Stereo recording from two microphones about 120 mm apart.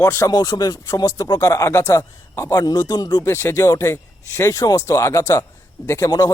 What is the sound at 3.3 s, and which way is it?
A man's voice, 20° left (ahead or behind).